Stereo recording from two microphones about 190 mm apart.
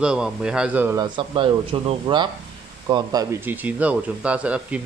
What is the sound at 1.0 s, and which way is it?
Speech, 25° right (ahead or behind).